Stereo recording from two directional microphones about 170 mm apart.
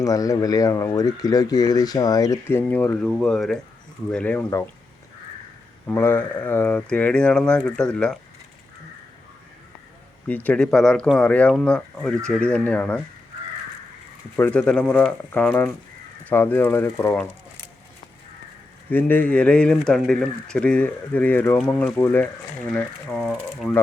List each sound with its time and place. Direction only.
0.0 s speech: 20° left (ahead or behind)
5.9 s speech: 10° left (ahead or behind)
10.2 s speech: 10° left (ahead or behind)
14.3 s speech: 10° left (ahead or behind)
18.9 s speech: 10° left (ahead or behind)